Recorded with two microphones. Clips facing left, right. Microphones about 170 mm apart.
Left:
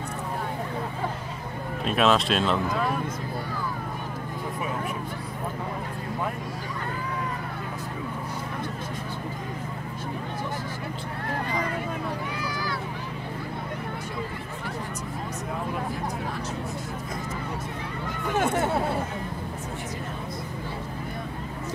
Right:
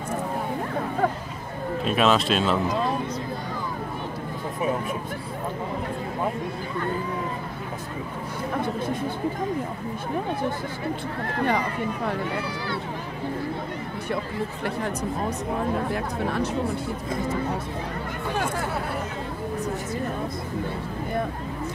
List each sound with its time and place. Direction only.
1.9 s speech: centre (ahead or behind)
2.7 s speech: 25° right (ahead or behind)
18.3 s speech: 20° left (ahead or behind)